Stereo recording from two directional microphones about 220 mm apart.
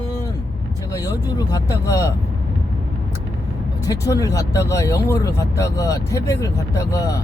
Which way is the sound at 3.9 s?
15° left (ahead or behind).